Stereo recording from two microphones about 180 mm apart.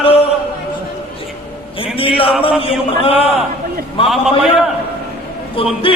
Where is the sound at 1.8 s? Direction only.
30° left (ahead or behind).